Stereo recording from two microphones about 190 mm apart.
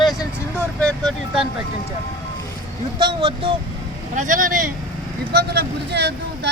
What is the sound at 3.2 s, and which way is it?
Speech, 25° right (ahead or behind).